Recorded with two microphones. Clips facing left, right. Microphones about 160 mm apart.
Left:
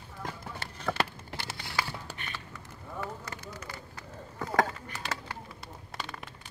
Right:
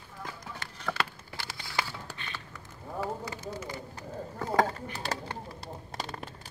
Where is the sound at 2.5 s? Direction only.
5° right (ahead or behind).